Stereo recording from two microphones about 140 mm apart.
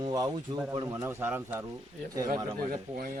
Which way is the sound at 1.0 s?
15° right (ahead or behind).